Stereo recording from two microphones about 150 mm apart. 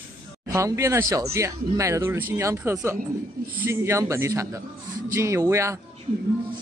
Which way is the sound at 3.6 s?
20° right (ahead or behind).